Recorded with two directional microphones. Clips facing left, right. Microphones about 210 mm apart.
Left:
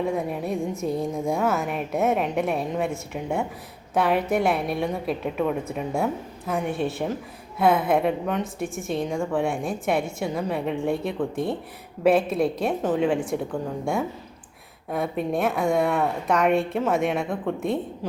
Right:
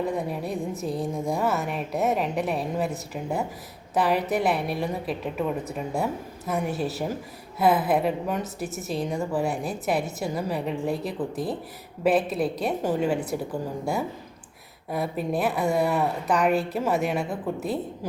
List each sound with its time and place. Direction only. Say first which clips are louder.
0.0 s a woman's voice: left 2 dB; centre (ahead or behind)
0.8 s a woman's voice: left 3 dB; 30° right (ahead or behind)
1.3 s a woman's voice: left 2 dB; centre (ahead or behind)